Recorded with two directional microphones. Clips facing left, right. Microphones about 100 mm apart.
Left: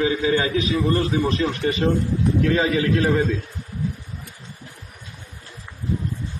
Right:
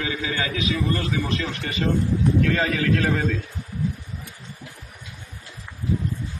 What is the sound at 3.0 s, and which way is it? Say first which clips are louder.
Speech: left 4 dB; 5° left (ahead or behind).